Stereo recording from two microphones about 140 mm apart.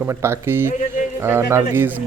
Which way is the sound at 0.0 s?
20° right (ahead or behind).